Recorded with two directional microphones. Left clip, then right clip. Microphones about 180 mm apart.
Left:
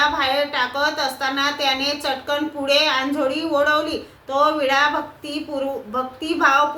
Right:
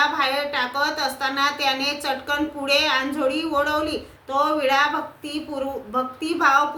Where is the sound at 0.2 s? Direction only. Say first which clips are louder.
Left 2 dB; 15° right (ahead or behind).